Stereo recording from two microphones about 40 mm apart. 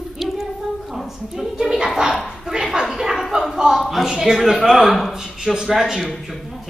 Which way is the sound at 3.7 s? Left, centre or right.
Centre.